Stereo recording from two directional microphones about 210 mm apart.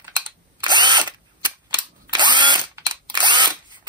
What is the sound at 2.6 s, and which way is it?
Camera, 15° right (ahead or behind).